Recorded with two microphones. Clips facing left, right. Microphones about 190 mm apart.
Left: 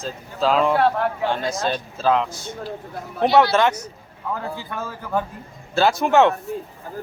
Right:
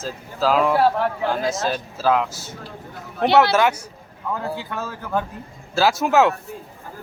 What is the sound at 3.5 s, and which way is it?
Speech, 5° right (ahead or behind).